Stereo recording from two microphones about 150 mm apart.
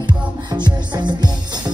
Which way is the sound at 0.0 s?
30° right (ahead or behind).